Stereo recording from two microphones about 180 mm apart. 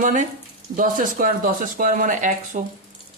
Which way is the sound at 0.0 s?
45° right (ahead or behind).